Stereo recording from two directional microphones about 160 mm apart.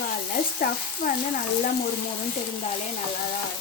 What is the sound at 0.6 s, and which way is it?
Frying, 60° left (ahead or behind).